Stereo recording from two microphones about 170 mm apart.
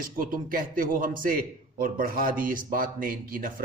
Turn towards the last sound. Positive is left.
turn(degrees=-55)  # may be behind; listen again after turning